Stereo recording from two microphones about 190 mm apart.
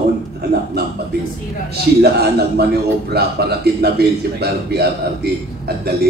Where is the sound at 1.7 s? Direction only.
55° right (ahead or behind).